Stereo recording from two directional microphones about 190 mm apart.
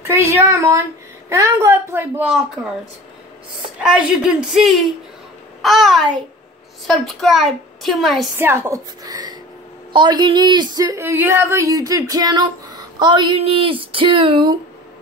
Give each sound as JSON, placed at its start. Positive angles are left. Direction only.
{"t": 0.0, "sound": "a woman's voice", "side_deg": -15}
{"t": 3.8, "sound": "a woman's voice", "side_deg": -5}
{"t": 8.4, "sound": "a woman's voice", "side_deg": -15}